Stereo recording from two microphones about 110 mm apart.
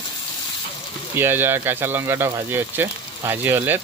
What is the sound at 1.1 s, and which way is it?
Speech, 20° right (ahead or behind).